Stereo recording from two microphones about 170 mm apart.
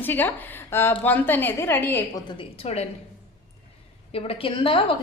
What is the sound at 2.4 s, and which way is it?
Speech, 35° left (ahead or behind).